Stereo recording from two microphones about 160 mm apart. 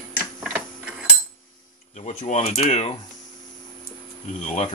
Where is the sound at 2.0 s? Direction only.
40° left (ahead or behind).